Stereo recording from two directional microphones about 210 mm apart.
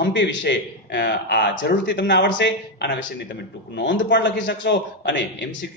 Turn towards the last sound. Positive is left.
turn(degrees=60)  # may be behind; listen again after turning